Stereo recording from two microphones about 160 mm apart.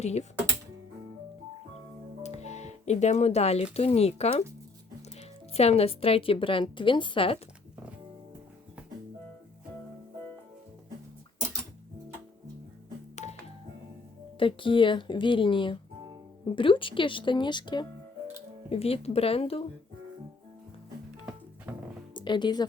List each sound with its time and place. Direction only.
0.0 s speech: 45° left (ahead or behind)
2.2 s speech: 45° left (ahead or behind)
5.5 s a woman's voice: 40° left (ahead or behind)
14.3 s a woman's voice: 35° left (ahead or behind)
18.7 s a woman's voice: 40° left (ahead or behind)
21.7 s music: 10° right (ahead or behind)
22.1 s speech: 30° left (ahead or behind)